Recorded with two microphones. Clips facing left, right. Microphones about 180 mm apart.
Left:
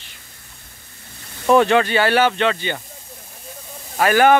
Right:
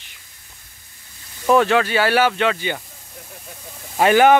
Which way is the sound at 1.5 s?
5° right (ahead or behind).